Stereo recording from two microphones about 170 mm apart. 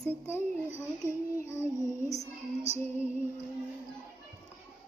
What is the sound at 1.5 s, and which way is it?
Female singing, 15° left (ahead or behind).